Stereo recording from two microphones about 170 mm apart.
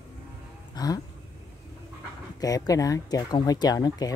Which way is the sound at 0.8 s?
25° left (ahead or behind).